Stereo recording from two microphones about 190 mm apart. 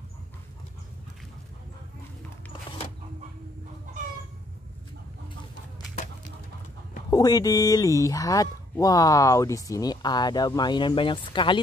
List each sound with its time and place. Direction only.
7.1 s speech: 20° left (ahead or behind)